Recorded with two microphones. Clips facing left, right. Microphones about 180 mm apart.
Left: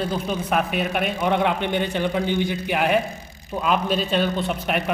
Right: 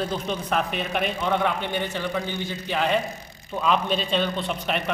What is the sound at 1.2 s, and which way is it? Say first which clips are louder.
A man's voice: left 5 dB; 15° left (ahead or behind).